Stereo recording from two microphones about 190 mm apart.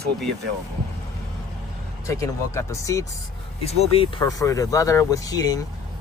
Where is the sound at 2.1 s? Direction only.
15° left (ahead or behind).